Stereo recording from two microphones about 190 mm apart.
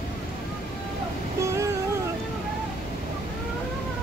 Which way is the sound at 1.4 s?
15° right (ahead or behind).